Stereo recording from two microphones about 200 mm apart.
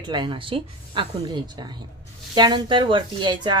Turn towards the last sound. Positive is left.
turn(degrees=-20)  # may be behind; listen again after turning